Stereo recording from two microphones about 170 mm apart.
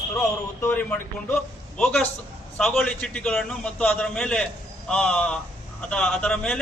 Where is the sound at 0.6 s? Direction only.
10° left (ahead or behind).